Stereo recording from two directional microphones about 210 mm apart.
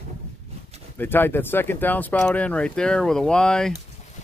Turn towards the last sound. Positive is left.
turn(degrees=5)  # may be behind; listen again after turning